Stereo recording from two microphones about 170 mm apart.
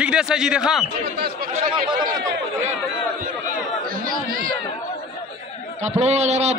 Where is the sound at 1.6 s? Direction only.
55° right (ahead or behind).